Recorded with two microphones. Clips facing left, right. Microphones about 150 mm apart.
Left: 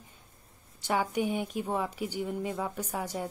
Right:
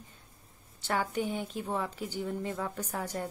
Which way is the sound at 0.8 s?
15° left (ahead or behind).